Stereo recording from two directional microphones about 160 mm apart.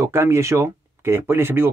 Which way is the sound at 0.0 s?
15° right (ahead or behind).